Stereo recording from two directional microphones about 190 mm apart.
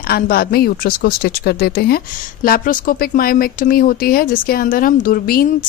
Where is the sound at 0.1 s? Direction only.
55° left (ahead or behind).